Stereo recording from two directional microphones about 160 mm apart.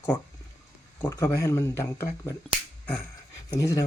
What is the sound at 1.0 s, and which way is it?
Speech, 15° left (ahead or behind).